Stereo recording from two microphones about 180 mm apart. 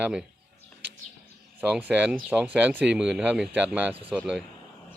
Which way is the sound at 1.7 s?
10° right (ahead or behind).